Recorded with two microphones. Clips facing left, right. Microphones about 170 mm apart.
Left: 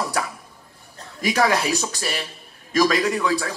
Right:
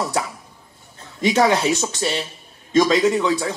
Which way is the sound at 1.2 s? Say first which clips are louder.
Right 3 dB; 20° right (ahead or behind).